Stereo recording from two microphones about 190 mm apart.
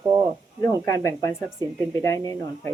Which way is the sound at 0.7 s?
15° left (ahead or behind).